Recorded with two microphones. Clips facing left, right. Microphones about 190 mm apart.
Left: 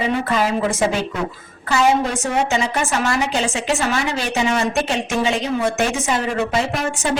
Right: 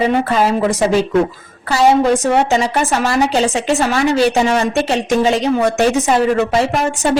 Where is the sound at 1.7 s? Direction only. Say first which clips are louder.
Right 5 dB; 35° right (ahead or behind).